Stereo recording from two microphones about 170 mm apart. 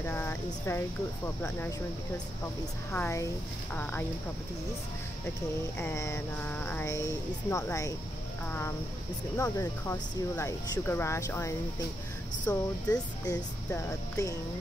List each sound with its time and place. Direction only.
0.0 s speech: 15° left (ahead or behind)
5.8 s speech: 15° left (ahead or behind)